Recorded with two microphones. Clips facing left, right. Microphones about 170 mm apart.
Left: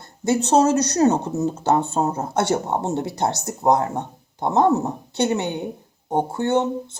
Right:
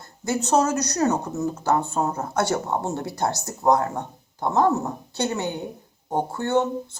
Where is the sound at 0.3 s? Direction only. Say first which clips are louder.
Left 4 dB; 25° left (ahead or behind).